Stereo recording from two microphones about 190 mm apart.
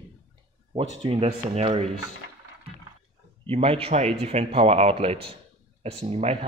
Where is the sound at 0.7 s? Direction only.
30° right (ahead or behind).